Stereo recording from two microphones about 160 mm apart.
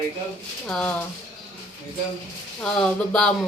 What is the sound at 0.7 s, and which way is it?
Speech, 10° left (ahead or behind).